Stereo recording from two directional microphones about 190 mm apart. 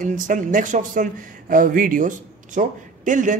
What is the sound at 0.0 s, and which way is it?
A man's voice, 45° right (ahead or behind).